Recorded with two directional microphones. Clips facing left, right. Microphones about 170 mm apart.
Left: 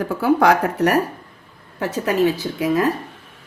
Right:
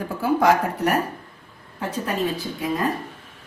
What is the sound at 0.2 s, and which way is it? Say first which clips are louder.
A woman's voice: left 3 dB; 75° left (ahead or behind).